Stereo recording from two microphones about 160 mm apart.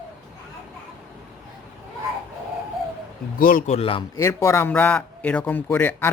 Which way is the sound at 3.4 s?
60° left (ahead or behind).